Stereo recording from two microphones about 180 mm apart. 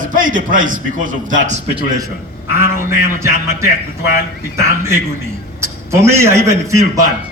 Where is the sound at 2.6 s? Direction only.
15° right (ahead or behind).